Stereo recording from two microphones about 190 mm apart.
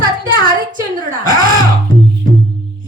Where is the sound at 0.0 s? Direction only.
50° right (ahead or behind).